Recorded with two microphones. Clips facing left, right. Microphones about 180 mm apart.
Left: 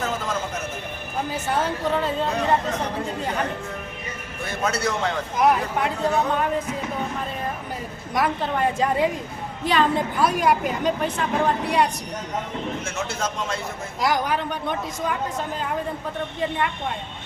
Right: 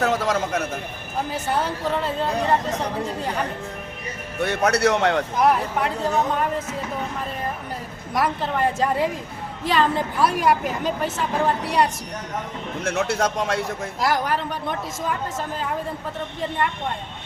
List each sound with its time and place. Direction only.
0.0 s a sound: 70° right (ahead or behind)
1.3 s a woman's voice: centre (ahead or behind)
4.4 s a man's voice: 70° right (ahead or behind)
5.4 s a woman's voice: centre (ahead or behind)
8.1 s a woman's voice: centre (ahead or behind)
12.8 s a man's voice: 65° right (ahead or behind)
14.0 s a woman's voice: centre (ahead or behind)